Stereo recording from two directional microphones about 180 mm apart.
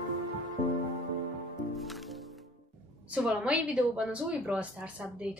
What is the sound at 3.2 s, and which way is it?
Speech, 5° right (ahead or behind).